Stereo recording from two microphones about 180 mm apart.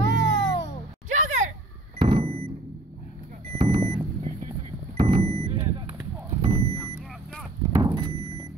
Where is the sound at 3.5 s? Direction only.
35° right (ahead or behind).